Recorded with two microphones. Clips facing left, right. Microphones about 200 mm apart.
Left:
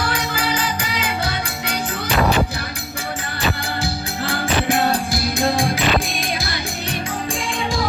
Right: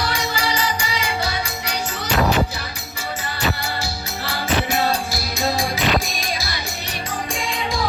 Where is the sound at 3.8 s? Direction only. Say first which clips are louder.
Left 4 dB; 55° left (ahead or behind).